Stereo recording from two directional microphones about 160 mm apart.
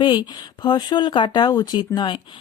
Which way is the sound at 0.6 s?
25° left (ahead or behind).